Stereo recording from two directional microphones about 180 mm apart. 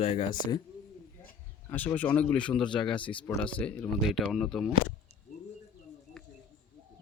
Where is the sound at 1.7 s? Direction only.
10° left (ahead or behind).